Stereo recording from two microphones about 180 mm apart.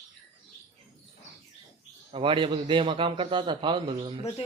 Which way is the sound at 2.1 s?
30° right (ahead or behind).